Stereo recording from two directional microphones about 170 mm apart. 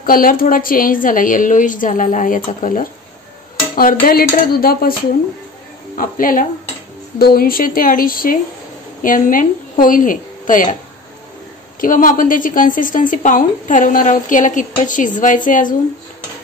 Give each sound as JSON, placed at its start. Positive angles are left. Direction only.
{"t": 0.0, "sound": "a woman's voice", "side_deg": 55}
{"t": 5.9, "sound": "a woman's voice", "side_deg": 55}
{"t": 11.8, "sound": "a woman's voice", "side_deg": 55}